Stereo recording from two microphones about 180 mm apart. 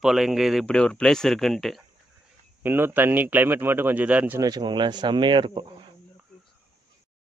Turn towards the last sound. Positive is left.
turn(degrees=-25)  # may be behind; listen again after turning